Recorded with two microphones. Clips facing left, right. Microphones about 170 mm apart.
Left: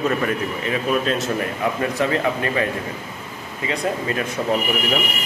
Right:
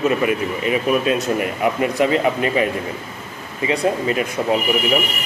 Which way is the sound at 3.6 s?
20° right (ahead or behind).